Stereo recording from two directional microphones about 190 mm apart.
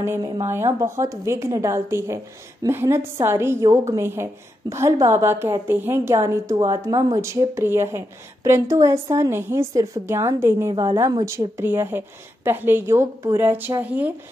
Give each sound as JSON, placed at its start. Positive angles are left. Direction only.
{"t": 0.0, "sound": "a woman's voice", "side_deg": -15}